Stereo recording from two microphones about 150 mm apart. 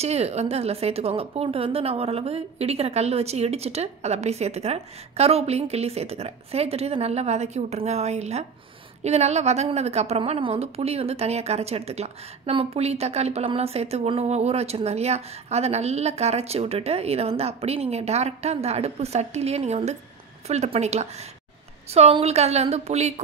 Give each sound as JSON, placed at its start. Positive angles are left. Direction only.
{"t": 0.0, "sound": "a woman's voice", "side_deg": -45}